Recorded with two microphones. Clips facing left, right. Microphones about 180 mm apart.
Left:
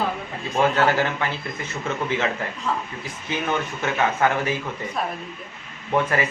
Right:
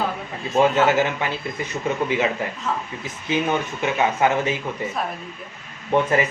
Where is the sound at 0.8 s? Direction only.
20° right (ahead or behind).